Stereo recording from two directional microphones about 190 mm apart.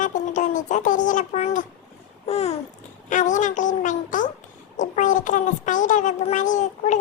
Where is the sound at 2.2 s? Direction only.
30° left (ahead or behind).